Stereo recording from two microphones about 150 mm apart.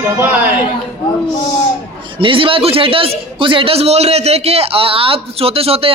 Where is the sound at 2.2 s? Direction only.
35° right (ahead or behind).